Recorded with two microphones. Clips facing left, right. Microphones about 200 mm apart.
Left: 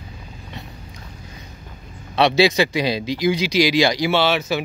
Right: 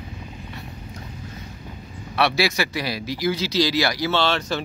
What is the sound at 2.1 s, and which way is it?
Speech, 20° left (ahead or behind).